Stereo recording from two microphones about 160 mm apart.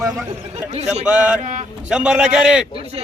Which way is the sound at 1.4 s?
50° right (ahead or behind).